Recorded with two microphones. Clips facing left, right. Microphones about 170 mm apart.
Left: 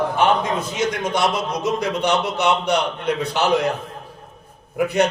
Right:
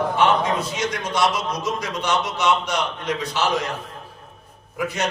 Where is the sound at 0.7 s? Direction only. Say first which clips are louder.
Left 2 dB; 55° left (ahead or behind).